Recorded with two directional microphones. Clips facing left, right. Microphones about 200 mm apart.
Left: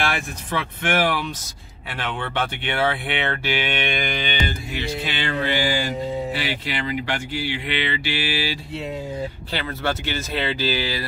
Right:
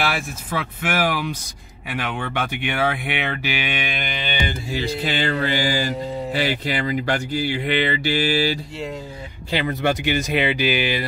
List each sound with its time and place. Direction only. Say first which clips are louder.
0.0 s speech: right 1 dB; 5° right (ahead or behind)
4.7 s music: right 6 dB; 40° right (ahead or behind)
6.3 s speech: right 4 dB; 40° right (ahead or behind)
9.5 s speech: right 7 dB; 15° right (ahead or behind)